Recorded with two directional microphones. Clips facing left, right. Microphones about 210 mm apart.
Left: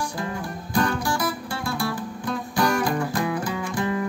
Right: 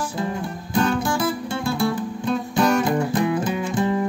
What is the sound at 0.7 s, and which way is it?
Music, 25° right (ahead or behind).